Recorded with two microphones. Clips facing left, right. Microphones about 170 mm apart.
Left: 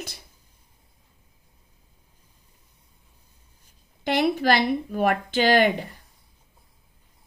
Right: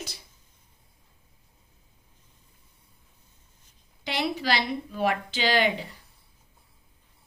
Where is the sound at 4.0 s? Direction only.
55° left (ahead or behind).